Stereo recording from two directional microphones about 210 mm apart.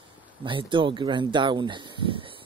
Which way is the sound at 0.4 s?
25° right (ahead or behind).